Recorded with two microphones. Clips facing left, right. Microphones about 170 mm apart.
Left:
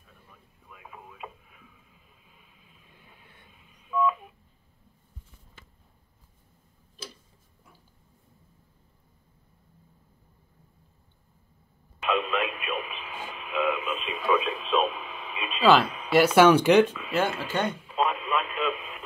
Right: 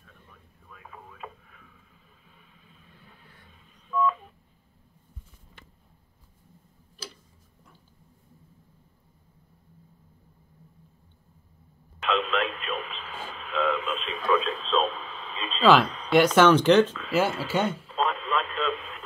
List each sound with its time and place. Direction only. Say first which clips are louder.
0.7 s radio: even; 10° left (ahead or behind)
3.1 s vehicle: right 1 dB; 20° left (ahead or behind)
3.9 s telephone dialing: even; 10° left (ahead or behind)
12.0 s radio: right 1 dB; 10° left (ahead or behind)
15.6 s speech: right 1 dB; centre (ahead or behind)
17.5 s speech: right 2 dB; 10° right (ahead or behind)
17.8 s radio: left 1 dB; 10° left (ahead or behind)